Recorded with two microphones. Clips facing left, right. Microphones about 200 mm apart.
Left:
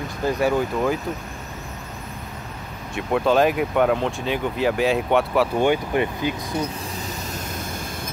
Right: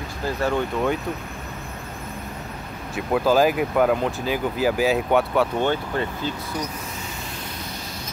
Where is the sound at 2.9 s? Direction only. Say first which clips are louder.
Even; centre (ahead or behind).